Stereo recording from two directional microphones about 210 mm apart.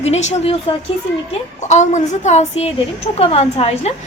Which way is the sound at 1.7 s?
35° left (ahead or behind).